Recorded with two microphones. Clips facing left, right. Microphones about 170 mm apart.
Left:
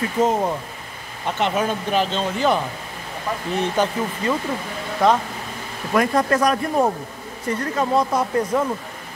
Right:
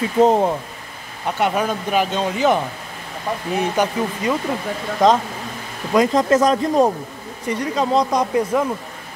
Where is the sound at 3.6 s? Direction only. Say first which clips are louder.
Right 1 dB; 15° right (ahead or behind).